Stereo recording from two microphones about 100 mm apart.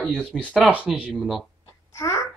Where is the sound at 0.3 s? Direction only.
10° right (ahead or behind).